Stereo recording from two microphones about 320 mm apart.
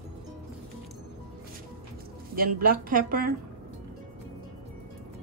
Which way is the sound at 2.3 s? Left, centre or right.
Right.